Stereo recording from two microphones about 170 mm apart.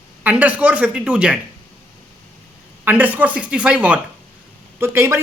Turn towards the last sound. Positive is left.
turn(degrees=-15)  # may be behind; listen again after turning